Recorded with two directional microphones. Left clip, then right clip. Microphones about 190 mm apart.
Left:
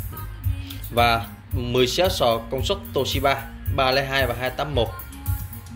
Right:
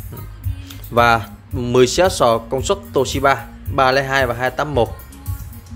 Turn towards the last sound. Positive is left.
turn(degrees=-35)  # may be behind; listen again after turning